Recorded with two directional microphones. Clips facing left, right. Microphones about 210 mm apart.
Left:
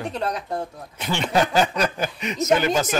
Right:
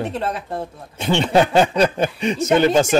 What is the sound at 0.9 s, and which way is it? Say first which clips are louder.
Speech: right 6 dB; 25° right (ahead or behind).